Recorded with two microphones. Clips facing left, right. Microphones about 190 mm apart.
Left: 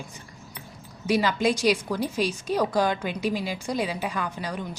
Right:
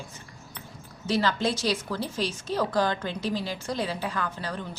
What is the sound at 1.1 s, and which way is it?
Speech, 10° left (ahead or behind).